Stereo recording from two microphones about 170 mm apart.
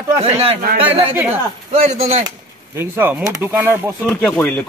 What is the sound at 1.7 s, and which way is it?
Speech, 40° right (ahead or behind).